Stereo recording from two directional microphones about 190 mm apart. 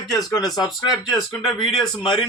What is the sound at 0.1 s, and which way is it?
Speech, 20° left (ahead or behind).